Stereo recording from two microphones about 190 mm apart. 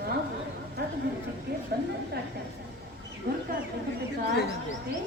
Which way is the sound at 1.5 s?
60° right (ahead or behind).